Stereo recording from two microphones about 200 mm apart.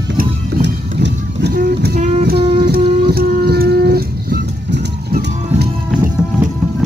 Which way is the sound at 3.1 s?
50° right (ahead or behind).